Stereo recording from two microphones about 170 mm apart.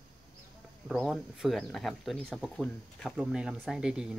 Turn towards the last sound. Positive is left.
turn(degrees=-5)  # may be behind; listen again after turning